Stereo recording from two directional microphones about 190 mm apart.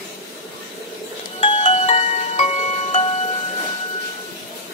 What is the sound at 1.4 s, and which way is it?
Music, 30° left (ahead or behind).